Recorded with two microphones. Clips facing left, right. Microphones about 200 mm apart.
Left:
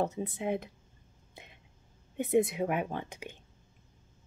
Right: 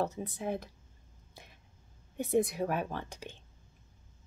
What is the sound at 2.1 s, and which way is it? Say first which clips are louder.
Speech: left 2 dB; 20° left (ahead or behind).